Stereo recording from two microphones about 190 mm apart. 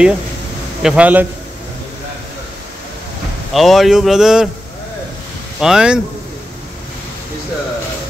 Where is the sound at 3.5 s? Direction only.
Centre (ahead or behind).